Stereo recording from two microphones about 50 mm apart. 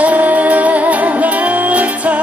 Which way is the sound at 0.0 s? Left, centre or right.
Right.